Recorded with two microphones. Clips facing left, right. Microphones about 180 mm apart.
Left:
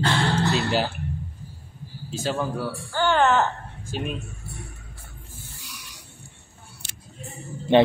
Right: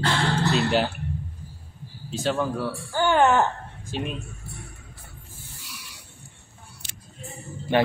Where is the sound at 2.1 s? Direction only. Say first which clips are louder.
Right 1 dB; centre (ahead or behind).